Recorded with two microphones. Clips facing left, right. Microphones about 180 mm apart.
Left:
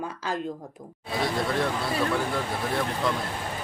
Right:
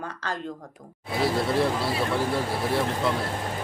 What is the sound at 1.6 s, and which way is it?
Speech, 30° right (ahead or behind).